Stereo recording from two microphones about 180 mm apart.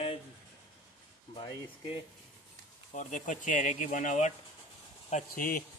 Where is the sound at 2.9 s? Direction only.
45° left (ahead or behind).